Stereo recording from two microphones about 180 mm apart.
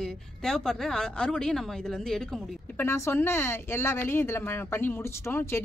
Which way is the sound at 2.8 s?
15° left (ahead or behind).